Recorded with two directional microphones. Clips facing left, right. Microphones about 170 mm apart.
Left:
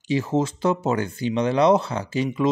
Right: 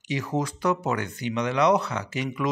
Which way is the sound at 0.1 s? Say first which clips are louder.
Left 5 dB; 25° left (ahead or behind).